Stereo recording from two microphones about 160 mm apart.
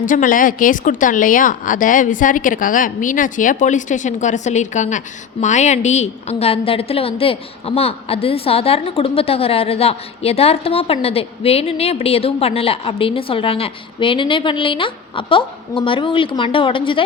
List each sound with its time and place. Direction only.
0.0 s a woman's voice: 55° left (ahead or behind); by 17.0 s 30° left (ahead or behind)